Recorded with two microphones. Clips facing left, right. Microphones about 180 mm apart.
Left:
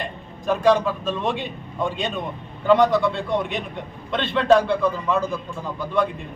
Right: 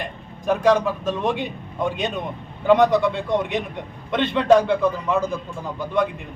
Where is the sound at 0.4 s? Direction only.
15° right (ahead or behind).